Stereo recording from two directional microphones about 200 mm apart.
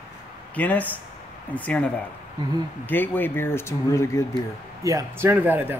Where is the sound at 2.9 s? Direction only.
10° left (ahead or behind).